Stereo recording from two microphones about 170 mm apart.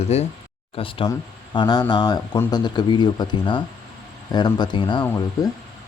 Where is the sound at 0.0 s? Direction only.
40° left (ahead or behind).